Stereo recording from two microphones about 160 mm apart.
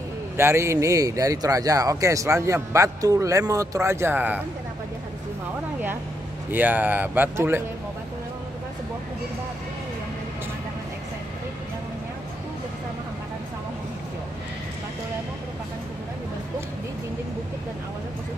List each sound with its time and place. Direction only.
0.4 s speech: 15° right (ahead or behind)
6.5 s speech: 10° right (ahead or behind)